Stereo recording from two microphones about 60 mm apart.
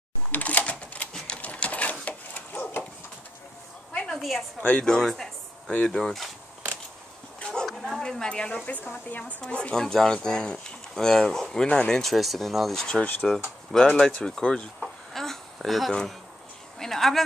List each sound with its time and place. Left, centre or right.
0.3 s typewriter: left
1.2 s a sound: left
3.9 s a sound: centre
4.2 s a woman's voice: centre
4.6 s speech: left
4.8 s speech: centre
5.7 s speech: left
5.9 s speech: centre
7.3 s a sound: centre
9.4 s speech: centre
12.8 s speech: centre
13.9 s a sound: centre
16.8 s speech: centre